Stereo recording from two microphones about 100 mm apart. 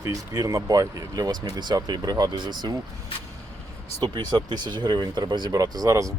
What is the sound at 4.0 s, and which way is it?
Speech, 45° right (ahead or behind).